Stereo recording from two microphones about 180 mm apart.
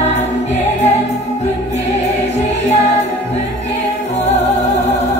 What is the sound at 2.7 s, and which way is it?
Music, 40° left (ahead or behind).